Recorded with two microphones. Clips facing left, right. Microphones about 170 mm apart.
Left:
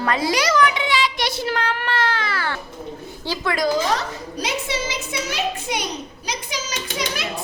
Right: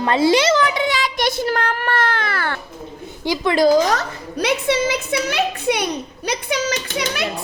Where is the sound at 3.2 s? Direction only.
15° right (ahead or behind).